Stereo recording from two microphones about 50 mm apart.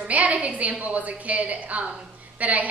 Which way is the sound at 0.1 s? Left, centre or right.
Right.